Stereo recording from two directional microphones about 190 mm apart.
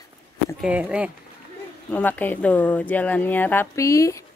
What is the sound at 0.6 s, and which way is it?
Speech, 5° right (ahead or behind).